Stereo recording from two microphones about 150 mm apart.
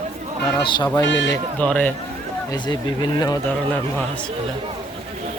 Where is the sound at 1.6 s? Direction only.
10° left (ahead or behind).